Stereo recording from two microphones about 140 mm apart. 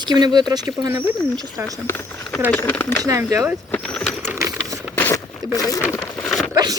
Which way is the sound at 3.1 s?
25° right (ahead or behind).